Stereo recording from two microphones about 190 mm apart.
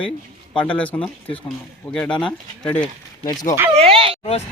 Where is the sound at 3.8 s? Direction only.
30° right (ahead or behind).